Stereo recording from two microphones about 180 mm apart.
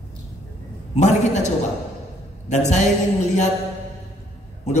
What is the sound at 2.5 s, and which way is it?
Speech, 40° left (ahead or behind).